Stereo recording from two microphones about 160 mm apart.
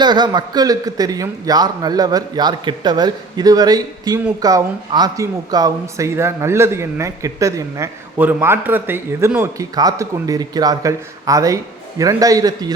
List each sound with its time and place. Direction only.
0.0 s a man's voice: 25° right (ahead or behind)